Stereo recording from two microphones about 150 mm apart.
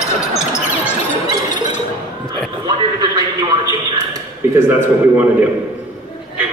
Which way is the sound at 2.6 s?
30° right (ahead or behind).